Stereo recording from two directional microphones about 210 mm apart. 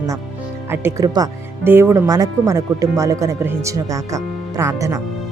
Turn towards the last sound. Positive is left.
turn(degrees=-15)  # may be behind; listen again after turning